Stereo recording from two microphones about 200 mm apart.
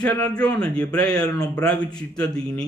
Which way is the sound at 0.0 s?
5° left (ahead or behind).